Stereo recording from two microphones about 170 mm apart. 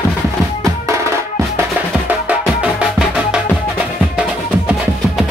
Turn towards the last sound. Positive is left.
turn(degrees=-5)  # may be behind; listen again after turning